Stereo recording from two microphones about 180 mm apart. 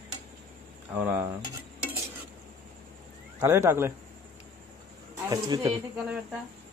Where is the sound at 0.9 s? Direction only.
10° right (ahead or behind).